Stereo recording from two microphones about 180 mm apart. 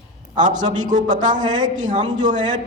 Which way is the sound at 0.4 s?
45° right (ahead or behind).